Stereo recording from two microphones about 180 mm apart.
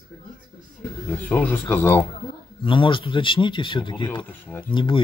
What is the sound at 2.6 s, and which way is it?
Speech, 25° left (ahead or behind).